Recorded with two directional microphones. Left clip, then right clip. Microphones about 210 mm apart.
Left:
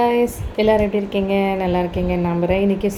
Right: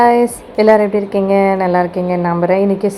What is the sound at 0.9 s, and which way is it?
Speech, 45° right (ahead or behind).